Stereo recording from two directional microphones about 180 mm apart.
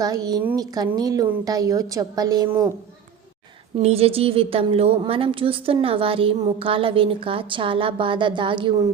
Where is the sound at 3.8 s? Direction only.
35° right (ahead or behind).